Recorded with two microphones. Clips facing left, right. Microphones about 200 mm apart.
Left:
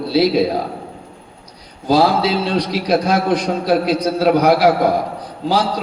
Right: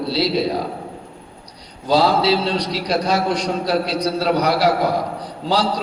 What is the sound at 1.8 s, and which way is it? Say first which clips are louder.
A man's voice: left 1 dB; 55° left (ahead or behind).